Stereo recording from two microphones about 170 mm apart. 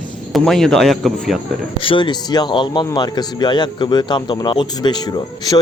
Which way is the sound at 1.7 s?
30° left (ahead or behind).